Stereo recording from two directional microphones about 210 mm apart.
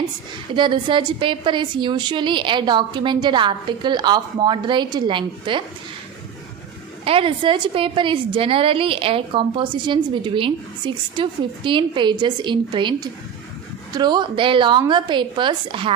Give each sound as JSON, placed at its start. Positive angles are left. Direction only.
{"t": 0.6, "sound": "a woman's voice", "side_deg": -25}
{"t": 7.1, "sound": "a woman's voice", "side_deg": -25}